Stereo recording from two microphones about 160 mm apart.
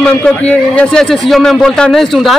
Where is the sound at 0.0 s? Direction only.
5° left (ahead or behind).